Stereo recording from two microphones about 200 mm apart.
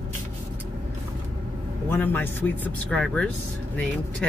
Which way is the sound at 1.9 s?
10° left (ahead or behind).